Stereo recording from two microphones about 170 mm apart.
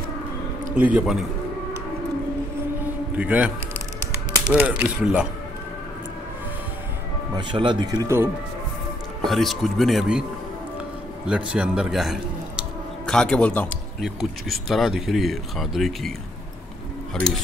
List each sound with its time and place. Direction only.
0.7 s a man's voice: 10° right (ahead or behind)
2.8 s a sound: 10° right (ahead or behind)
4.6 s speech: 10° right (ahead or behind)
7.3 s speech: 25° right (ahead or behind)
9.2 s a man's voice: centre (ahead or behind)
11.2 s a man's voice: 5° right (ahead or behind)